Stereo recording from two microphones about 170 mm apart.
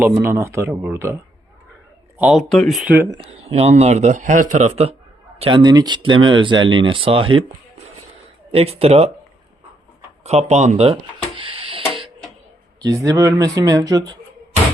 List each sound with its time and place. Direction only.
0.0 s speech: 10° right (ahead or behind)
2.1 s speech: 5° right (ahead or behind)
3.1 s speech: 35° right (ahead or behind)
8.5 s speech: 35° right (ahead or behind)
10.2 s speech: 40° right (ahead or behind)
11.3 s a sound: 30° right (ahead or behind)
12.8 s speech: 20° right (ahead or behind)